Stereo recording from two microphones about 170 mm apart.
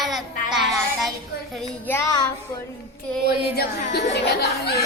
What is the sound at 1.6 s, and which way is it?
Speech, 10° left (ahead or behind).